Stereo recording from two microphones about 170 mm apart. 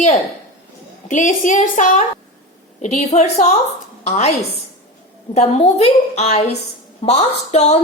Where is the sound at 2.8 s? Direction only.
45° left (ahead or behind).